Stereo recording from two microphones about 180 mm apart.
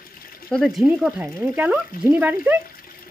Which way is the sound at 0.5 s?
Centre (ahead or behind).